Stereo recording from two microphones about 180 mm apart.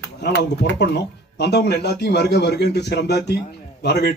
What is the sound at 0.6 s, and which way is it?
Speech, 65° left (ahead or behind).